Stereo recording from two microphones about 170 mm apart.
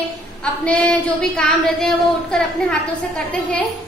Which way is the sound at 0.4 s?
5° left (ahead or behind).